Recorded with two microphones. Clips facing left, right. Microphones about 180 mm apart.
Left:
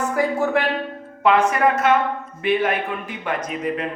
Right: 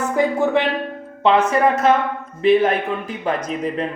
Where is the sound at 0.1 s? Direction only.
20° right (ahead or behind).